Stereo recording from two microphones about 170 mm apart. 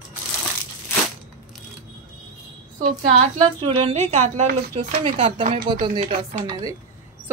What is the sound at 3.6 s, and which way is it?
Speech, 40° right (ahead or behind).